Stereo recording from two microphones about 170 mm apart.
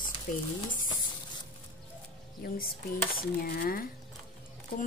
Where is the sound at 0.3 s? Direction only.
50° left (ahead or behind).